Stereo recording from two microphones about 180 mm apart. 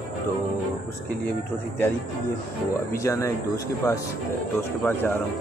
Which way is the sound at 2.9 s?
15° left (ahead or behind).